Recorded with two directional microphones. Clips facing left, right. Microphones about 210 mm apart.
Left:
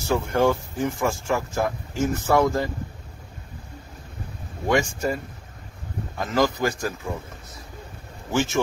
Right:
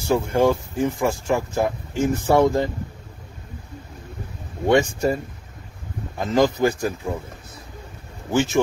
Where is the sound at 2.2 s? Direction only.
25° right (ahead or behind).